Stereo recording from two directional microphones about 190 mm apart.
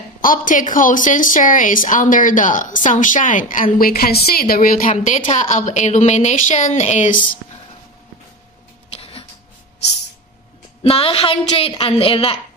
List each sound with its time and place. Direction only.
0.2 s a woman's voice: 45° left (ahead or behind)
10.8 s a woman's voice: 30° left (ahead or behind)